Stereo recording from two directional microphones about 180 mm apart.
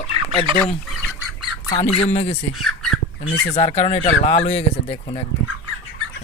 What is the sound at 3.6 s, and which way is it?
Speech, 40° left (ahead or behind).